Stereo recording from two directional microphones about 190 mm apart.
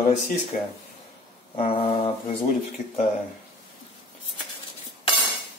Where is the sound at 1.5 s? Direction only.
30° left (ahead or behind).